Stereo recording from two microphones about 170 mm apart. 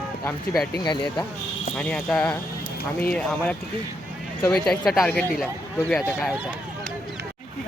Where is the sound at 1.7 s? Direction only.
5° left (ahead or behind).